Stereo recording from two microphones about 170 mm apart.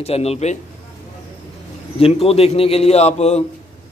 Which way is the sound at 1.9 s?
35° left (ahead or behind).